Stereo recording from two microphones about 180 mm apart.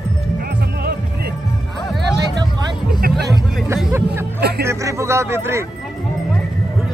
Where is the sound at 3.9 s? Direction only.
15° right (ahead or behind).